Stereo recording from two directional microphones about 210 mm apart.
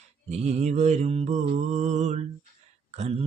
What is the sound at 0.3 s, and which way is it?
Mantra, 30° right (ahead or behind).